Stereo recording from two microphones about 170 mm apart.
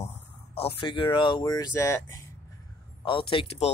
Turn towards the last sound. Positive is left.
turn(degrees=35)  # may be behind; listen again after turning